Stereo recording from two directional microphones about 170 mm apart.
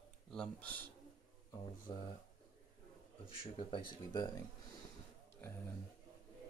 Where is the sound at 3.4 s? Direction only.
30° left (ahead or behind).